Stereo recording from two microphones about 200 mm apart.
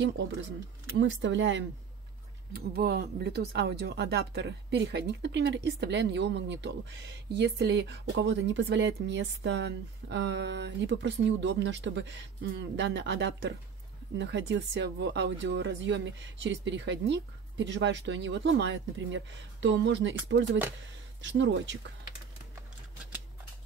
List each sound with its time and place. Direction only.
0.9 s speech: 65° right (ahead or behind)
2.5 s speech: 50° right (ahead or behind)